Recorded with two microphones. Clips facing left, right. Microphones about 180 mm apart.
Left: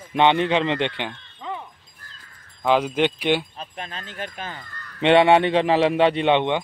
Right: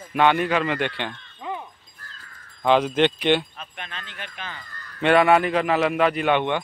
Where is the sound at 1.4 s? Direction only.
10° right (ahead or behind).